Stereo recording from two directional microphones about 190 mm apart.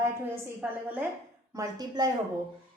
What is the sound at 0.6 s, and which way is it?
Speech, 10° right (ahead or behind).